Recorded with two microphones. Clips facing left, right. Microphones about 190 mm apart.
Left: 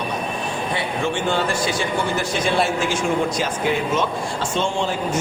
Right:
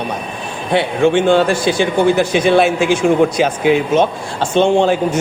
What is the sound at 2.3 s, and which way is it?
Speech, 70° right (ahead or behind).